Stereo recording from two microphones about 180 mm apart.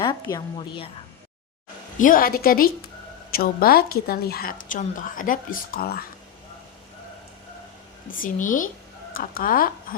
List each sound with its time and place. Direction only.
0.0 s a woman's voice: 25° left (ahead or behind)
2.0 s a woman's voice: 50° left (ahead or behind)
8.2 s a woman's voice: 45° left (ahead or behind)